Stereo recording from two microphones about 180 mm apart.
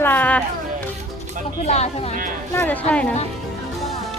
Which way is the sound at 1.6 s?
35° left (ahead or behind).